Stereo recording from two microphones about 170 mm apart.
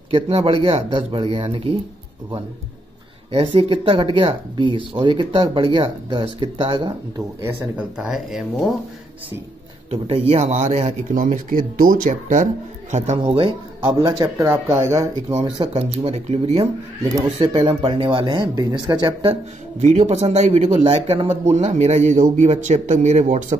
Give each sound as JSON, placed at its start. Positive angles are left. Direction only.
{"t": 0.1, "sound": "speech", "side_deg": -35}
{"t": 3.3, "sound": "speech", "side_deg": -30}
{"t": 7.4, "sound": "speech", "side_deg": -5}
{"t": 9.8, "sound": "speech", "side_deg": -35}
{"t": 10.3, "sound": "speech", "side_deg": -45}
{"t": 13.3, "sound": "speech", "side_deg": -30}
{"t": 14.4, "sound": "speech", "side_deg": -15}
{"t": 15.3, "sound": "speech", "side_deg": -35}
{"t": 17.4, "sound": "speech", "side_deg": -25}
{"t": 19.8, "sound": "speech", "side_deg": -45}